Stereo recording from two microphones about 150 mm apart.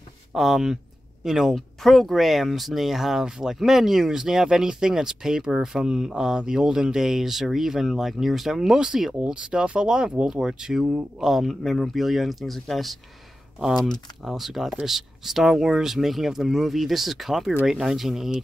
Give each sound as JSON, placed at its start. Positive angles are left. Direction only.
{"t": 0.3, "sound": "speech", "side_deg": 0}